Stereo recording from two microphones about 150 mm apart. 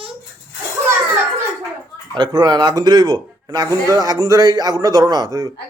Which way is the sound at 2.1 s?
30° right (ahead or behind).